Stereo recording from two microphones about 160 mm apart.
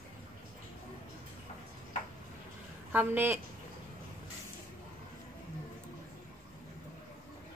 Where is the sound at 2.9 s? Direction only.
10° right (ahead or behind).